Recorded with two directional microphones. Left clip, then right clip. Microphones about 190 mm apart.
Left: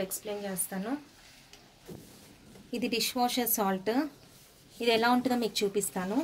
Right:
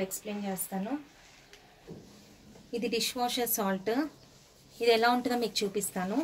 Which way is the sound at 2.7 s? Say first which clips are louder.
Left 1 dB; 50° left (ahead or behind).